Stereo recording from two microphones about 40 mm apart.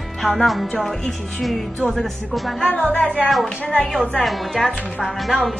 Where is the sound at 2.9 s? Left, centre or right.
Left.